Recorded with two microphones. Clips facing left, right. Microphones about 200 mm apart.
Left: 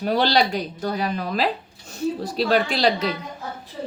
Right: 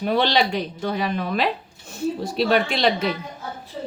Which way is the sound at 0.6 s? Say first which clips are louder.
Right 1 dB; 40° left (ahead or behind).